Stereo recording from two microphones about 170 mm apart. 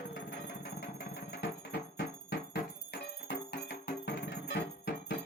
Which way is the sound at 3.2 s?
70° left (ahead or behind).